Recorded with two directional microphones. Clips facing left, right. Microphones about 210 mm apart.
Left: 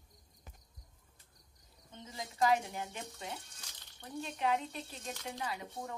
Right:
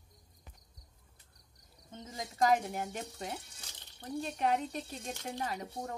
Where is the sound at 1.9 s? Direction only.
45° right (ahead or behind).